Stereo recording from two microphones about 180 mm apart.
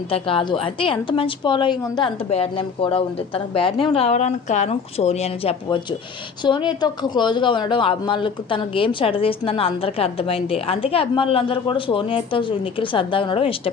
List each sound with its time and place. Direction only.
0.1 s a woman's voice: 30° left (ahead or behind)